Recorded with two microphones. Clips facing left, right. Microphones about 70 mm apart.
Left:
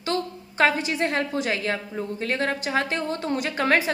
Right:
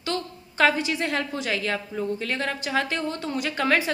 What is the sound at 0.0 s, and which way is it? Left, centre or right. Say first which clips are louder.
A woman's voice: left 3 dB; left.